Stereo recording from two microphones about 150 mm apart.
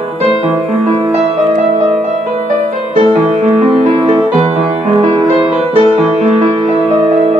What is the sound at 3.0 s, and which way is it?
Music, 40° right (ahead or behind).